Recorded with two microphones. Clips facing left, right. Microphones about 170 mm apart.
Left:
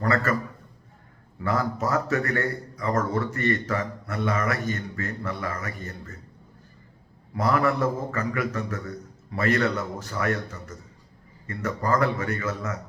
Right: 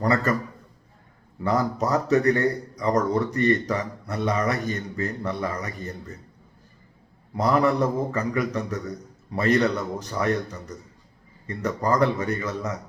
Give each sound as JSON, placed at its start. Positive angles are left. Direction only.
{"t": 0.0, "sound": "speech", "side_deg": -20}
{"t": 1.5, "sound": "speech", "side_deg": -15}
{"t": 7.3, "sound": "speech", "side_deg": -15}